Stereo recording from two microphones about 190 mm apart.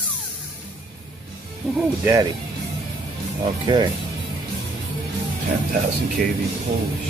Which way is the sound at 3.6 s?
20° right (ahead or behind).